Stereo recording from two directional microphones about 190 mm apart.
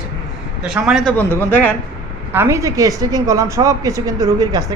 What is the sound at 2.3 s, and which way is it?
A woman's voice, 15° right (ahead or behind).